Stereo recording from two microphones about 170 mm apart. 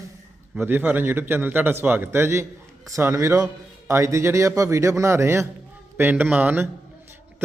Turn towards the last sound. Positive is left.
turn(degrees=-10)  # may be behind; listen again after turning